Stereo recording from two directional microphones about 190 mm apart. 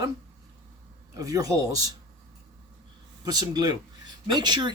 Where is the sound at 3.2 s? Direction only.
20° right (ahead or behind).